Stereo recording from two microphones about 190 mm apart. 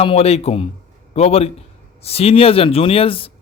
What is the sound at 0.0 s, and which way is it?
A man's voice, 30° left (ahead or behind).